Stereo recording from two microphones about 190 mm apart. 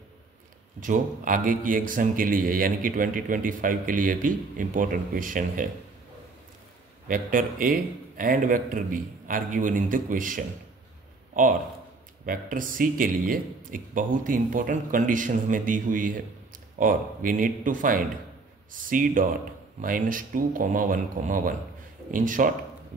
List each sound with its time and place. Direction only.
0.7 s a man's voice: 45° right (ahead or behind)
7.1 s a man's voice: 45° right (ahead or behind)
12.3 s a man's voice: 45° right (ahead or behind)